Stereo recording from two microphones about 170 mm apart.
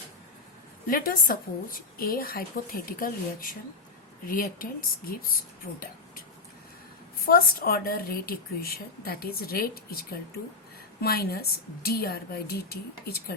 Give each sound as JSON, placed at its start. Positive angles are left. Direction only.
{"t": 0.9, "sound": "a woman's voice", "side_deg": 55}
{"t": 7.3, "sound": "a woman's voice", "side_deg": 60}